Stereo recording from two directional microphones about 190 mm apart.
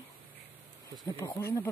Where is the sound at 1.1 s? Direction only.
15° left (ahead or behind).